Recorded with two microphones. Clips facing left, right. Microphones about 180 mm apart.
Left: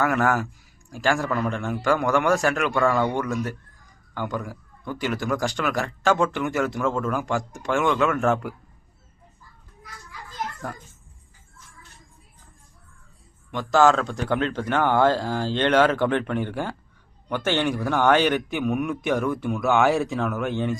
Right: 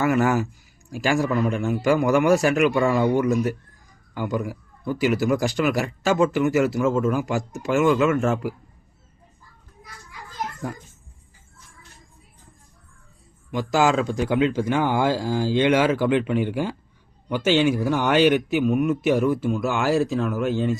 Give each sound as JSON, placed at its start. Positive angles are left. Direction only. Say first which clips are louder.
{"t": 0.0, "sound": "speech", "louder": "right 2 dB", "side_deg": -5}
{"t": 13.5, "sound": "speech", "louder": "left 2 dB", "side_deg": -10}
{"t": 19.4, "sound": "speech", "louder": "left 1 dB", "side_deg": 60}
{"t": 19.8, "sound": "speech", "louder": "right 3 dB", "side_deg": 0}
{"t": 20.1, "sound": "speech", "louder": "right 3 dB", "side_deg": 65}